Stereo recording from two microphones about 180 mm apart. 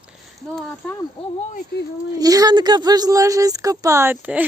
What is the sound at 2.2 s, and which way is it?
A woman's voice, 20° right (ahead or behind).